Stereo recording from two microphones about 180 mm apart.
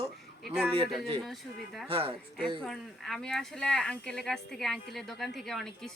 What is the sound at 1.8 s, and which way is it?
Speech, 30° right (ahead or behind).